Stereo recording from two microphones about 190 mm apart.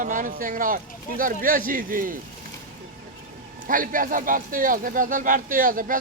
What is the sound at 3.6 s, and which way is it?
A man's voice, 45° right (ahead or behind).